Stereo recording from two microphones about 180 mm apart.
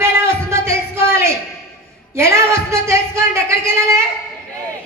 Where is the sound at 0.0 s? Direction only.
15° right (ahead or behind).